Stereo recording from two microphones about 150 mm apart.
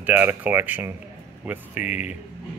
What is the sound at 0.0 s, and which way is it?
Speech, 15° right (ahead or behind).